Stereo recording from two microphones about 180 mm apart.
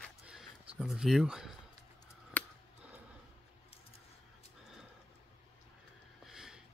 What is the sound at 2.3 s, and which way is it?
Scissors, 10° left (ahead or behind).